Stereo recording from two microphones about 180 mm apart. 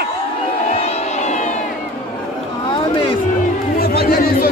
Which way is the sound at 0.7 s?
35° left (ahead or behind).